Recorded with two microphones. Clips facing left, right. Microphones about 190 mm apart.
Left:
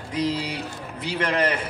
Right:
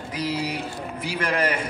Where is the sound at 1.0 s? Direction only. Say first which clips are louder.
Left 1 dB; 10° right (ahead or behind).